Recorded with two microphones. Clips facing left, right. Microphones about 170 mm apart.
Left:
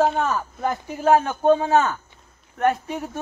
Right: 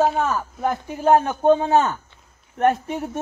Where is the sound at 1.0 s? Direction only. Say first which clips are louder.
Right 1 dB; 20° right (ahead or behind).